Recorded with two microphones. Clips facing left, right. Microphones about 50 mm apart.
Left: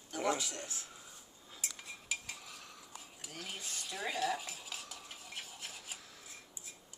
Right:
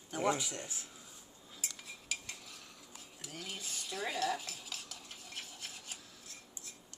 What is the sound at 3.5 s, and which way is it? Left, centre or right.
Cutlery, centre.